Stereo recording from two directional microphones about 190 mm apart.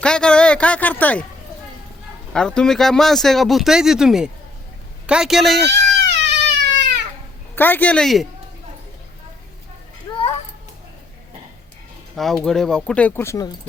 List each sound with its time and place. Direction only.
0.0 s speech: 5° left (ahead or behind)
2.3 s speech: 5° left (ahead or behind)
6.1 s baby cry: 60° right (ahead or behind)
7.5 s speech: 10° left (ahead or behind)
12.1 s speech: centre (ahead or behind)